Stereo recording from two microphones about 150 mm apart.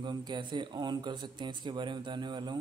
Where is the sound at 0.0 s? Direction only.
30° right (ahead or behind).